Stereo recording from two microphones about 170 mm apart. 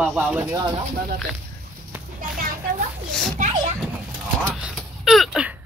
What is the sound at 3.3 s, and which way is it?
Children playing, 45° right (ahead or behind).